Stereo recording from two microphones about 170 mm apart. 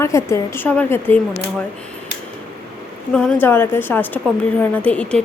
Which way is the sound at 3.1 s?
5° left (ahead or behind).